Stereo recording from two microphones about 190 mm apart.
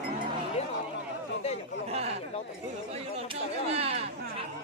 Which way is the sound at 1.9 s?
35° right (ahead or behind).